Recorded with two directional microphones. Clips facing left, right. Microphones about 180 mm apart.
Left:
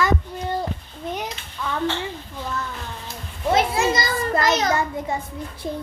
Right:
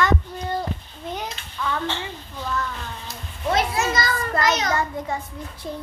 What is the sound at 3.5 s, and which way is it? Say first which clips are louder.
A child's voice: left 3 dB; 25° left (ahead or behind).